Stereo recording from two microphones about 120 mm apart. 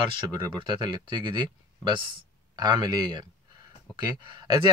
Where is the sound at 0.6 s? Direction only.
40° right (ahead or behind).